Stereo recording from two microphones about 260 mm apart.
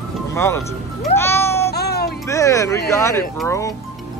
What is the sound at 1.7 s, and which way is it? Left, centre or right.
Music, left.